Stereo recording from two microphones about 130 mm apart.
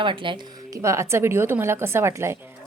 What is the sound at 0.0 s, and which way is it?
Speech, 40° right (ahead or behind).